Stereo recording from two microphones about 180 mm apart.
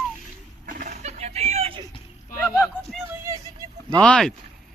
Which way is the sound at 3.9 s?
5° left (ahead or behind).